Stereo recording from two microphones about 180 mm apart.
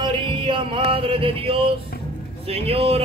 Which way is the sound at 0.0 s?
25° right (ahead or behind).